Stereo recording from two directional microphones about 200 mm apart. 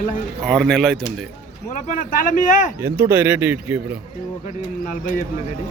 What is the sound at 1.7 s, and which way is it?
Speech, 40° left (ahead or behind).